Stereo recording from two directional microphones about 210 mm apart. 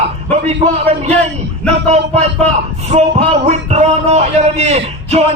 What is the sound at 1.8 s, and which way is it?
A man's voice, 30° right (ahead or behind).